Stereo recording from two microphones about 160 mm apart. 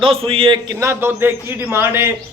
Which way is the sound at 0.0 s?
35° right (ahead or behind).